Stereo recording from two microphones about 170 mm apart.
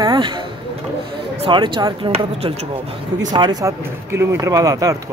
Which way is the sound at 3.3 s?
25° right (ahead or behind).